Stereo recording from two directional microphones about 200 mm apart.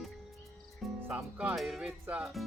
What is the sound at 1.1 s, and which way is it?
Speech, 5° right (ahead or behind).